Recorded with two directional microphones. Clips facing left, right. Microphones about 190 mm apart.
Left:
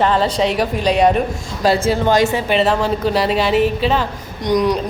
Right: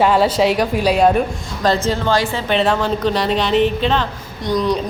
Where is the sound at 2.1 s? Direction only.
20° left (ahead or behind).